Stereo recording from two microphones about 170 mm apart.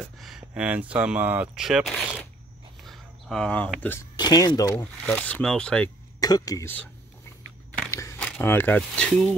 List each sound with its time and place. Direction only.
0.0 s speech: centre (ahead or behind)
4.2 s speech: 25° left (ahead or behind)
5.0 s speech: 10° left (ahead or behind)
6.1 s speech: 20° left (ahead or behind)
7.9 s single-lens reflex camera: 15° left (ahead or behind)
8.3 s speech: 10° left (ahead or behind)